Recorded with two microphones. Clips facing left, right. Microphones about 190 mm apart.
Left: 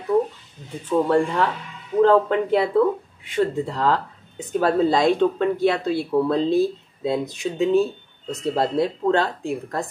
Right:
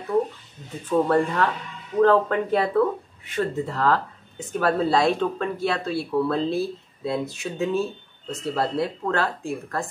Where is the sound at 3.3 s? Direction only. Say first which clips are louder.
Left 3 dB; 20° left (ahead or behind).